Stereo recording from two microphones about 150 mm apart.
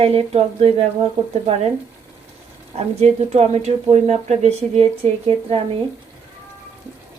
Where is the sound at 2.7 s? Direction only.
45° right (ahead or behind).